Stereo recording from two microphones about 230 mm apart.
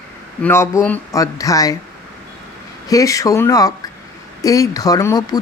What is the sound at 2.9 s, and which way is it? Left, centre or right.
Speech, centre.